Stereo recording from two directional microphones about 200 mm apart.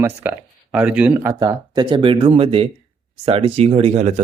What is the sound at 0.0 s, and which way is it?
Speech, 10° right (ahead or behind).